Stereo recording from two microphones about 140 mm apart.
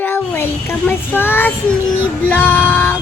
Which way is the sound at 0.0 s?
15° left (ahead or behind).